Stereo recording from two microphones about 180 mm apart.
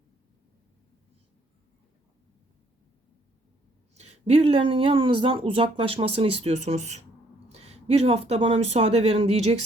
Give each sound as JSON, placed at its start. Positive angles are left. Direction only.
{"t": 3.9, "sound": "speech", "side_deg": -40}